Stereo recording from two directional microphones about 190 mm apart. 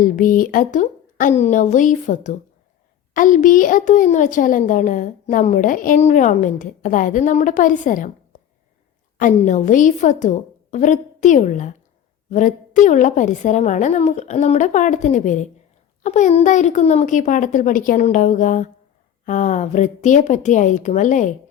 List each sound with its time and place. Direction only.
0.0 s a woman's voice: 45° left (ahead or behind)
9.1 s a woman's voice: 40° left (ahead or behind)